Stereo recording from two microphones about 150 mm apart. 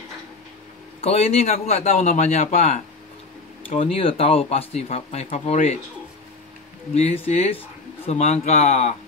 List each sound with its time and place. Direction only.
1.0 s speech: 45° left (ahead or behind)
6.9 s speech: 45° left (ahead or behind)